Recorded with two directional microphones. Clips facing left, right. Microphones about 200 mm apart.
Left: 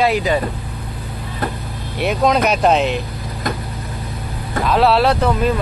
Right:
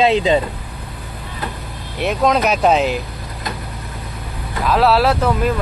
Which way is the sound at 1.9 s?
Centre (ahead or behind).